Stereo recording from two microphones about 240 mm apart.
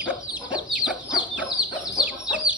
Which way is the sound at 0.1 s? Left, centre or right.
Centre.